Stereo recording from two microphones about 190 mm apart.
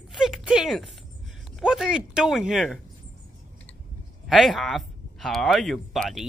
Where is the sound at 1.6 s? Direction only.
5° right (ahead or behind).